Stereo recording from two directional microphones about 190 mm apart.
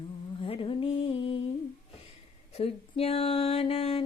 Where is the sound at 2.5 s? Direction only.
30° left (ahead or behind).